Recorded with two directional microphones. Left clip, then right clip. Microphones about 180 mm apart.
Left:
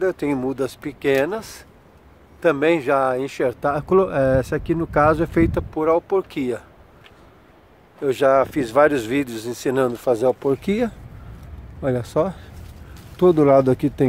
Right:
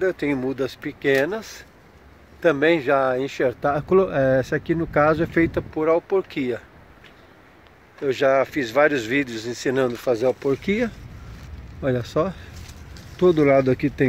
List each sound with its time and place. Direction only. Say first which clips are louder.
0.0 s speech: left 1 dB; 10° left (ahead or behind)
8.0 s speech: left 2 dB; 15° left (ahead or behind)